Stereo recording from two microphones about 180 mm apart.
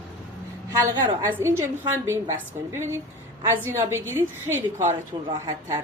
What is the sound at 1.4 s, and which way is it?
A woman's voice, 15° right (ahead or behind).